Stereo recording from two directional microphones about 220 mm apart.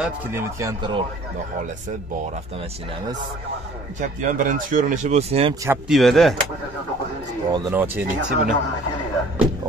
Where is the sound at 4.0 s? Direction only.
35° right (ahead or behind).